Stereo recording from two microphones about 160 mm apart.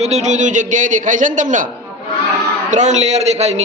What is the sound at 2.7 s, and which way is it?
Speech, 45° right (ahead or behind).